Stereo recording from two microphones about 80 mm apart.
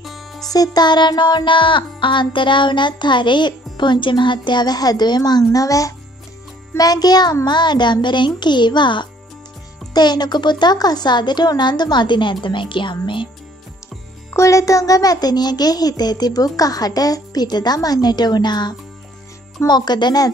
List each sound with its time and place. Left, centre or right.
0.0 s music: centre
0.5 s music: left
6.8 s a child's voice: left
7.4 s music: left
9.9 s music: left
14.3 s a child's voice: left